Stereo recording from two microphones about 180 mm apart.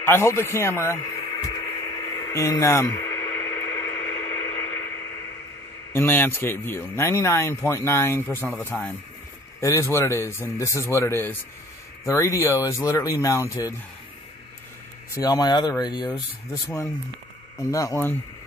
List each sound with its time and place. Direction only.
0.0 s radio: 15° left (ahead or behind)
5.9 s speech: 10° left (ahead or behind)
15.1 s speech: 20° left (ahead or behind)
17.6 s speech: 15° left (ahead or behind)